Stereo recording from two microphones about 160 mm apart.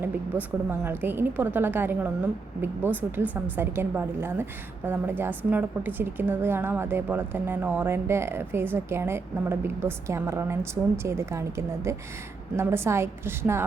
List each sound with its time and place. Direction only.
0.0 s a woman's voice: 15° right (ahead or behind)